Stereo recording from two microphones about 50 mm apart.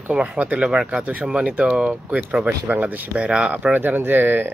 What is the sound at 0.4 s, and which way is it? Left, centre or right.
Speech, right.